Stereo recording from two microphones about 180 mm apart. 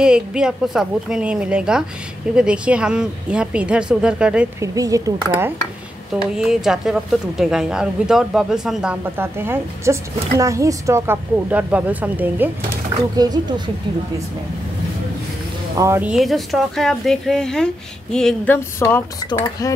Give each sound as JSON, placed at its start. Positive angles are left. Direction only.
{"t": 0.0, "sound": "a woman's voice", "side_deg": -5}
{"t": 4.6, "sound": "speech", "side_deg": -20}
{"t": 6.3, "sound": "a woman's voice", "side_deg": -5}
{"t": 9.2, "sound": "a woman's voice", "side_deg": -15}
{"t": 13.1, "sound": "speech", "side_deg": -20}
{"t": 15.7, "sound": "a woman's voice", "side_deg": -15}
{"t": 19.2, "sound": "speech", "side_deg": 20}